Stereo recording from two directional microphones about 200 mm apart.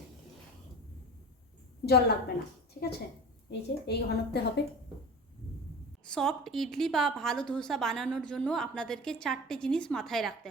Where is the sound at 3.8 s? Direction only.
55° left (ahead or behind).